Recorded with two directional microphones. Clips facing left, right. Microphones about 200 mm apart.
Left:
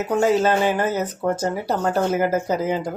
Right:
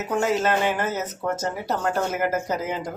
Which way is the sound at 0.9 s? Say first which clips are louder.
Left 4 dB; 30° left (ahead or behind).